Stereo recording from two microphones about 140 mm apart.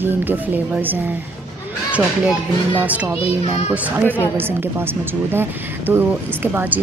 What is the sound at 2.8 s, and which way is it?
A woman's voice, 10° right (ahead or behind).